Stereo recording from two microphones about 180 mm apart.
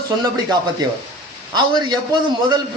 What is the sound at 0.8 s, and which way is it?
A man's voice, 20° right (ahead or behind).